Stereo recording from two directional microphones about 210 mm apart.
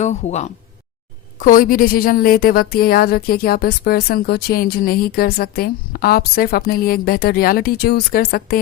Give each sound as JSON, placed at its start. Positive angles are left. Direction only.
{"t": 0.0, "sound": "a woman's voice", "side_deg": 35}